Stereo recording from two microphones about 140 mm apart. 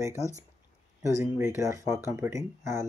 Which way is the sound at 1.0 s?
20° right (ahead or behind).